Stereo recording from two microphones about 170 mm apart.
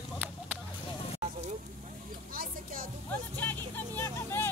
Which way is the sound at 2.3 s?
60° right (ahead or behind).